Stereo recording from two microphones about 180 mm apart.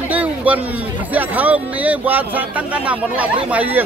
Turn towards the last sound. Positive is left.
turn(degrees=-10)  # may be behind; listen again after turning